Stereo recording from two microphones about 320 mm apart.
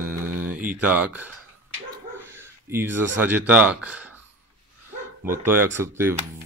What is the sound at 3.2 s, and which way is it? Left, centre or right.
Speech, centre.